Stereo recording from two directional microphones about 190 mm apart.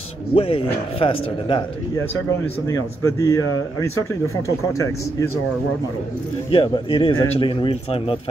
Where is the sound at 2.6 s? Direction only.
15° left (ahead or behind).